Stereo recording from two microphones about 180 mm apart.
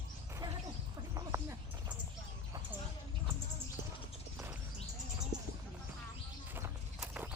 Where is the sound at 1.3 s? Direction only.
15° right (ahead or behind).